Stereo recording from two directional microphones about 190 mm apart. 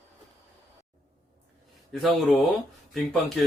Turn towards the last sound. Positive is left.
turn(degrees=0)  # may be behind; listen again after turning